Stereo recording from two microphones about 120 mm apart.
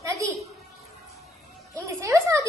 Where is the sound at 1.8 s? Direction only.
25° right (ahead or behind).